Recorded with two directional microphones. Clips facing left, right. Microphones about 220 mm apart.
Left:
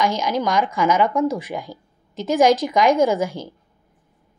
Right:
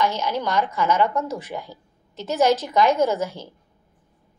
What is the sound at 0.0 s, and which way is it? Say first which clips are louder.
Speech: left 3 dB; 10° left (ahead or behind).